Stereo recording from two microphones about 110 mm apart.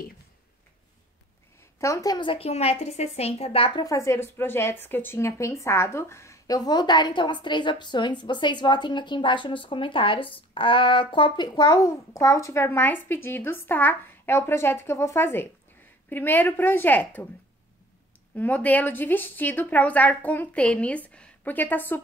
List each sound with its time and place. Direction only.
1.8 s a woman's voice: 30° left (ahead or behind)
2.1 s a woman's voice: 55° left (ahead or behind)
3.8 s speech: 30° left (ahead or behind)
18.3 s speech: 15° left (ahead or behind)